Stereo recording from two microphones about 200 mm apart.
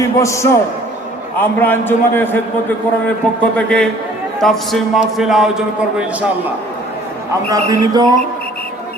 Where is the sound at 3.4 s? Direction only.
5° left (ahead or behind).